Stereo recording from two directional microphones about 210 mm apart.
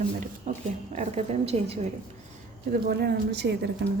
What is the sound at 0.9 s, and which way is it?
Speech, 30° right (ahead or behind).